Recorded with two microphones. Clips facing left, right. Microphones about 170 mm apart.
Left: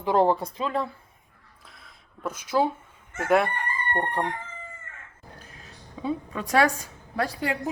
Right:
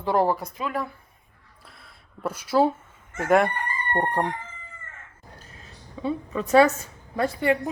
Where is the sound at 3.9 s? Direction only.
15° right (ahead or behind).